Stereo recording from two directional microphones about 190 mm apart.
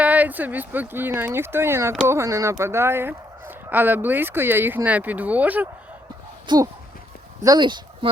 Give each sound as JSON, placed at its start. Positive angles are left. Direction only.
{"t": 0.0, "sound": "speech", "side_deg": -10}
{"t": 6.5, "sound": "speech", "side_deg": -25}